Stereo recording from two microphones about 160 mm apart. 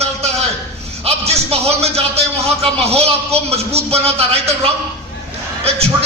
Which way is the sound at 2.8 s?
40° right (ahead or behind).